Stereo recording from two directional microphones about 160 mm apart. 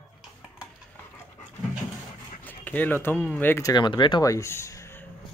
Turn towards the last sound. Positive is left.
turn(degrees=15)  # may be behind; listen again after turning